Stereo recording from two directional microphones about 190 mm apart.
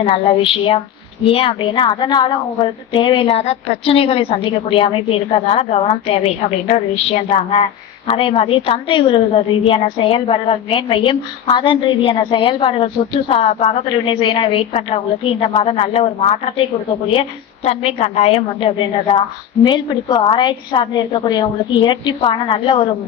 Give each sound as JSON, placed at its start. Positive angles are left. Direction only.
{"t": 0.0, "sound": "a woman's voice", "side_deg": 30}
{"t": 17.7, "sound": "a woman's voice", "side_deg": 35}